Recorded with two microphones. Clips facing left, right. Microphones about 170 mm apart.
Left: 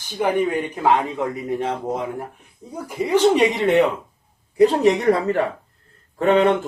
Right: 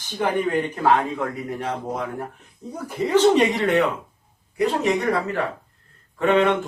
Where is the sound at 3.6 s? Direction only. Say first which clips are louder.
Left 3 dB; 25° left (ahead or behind).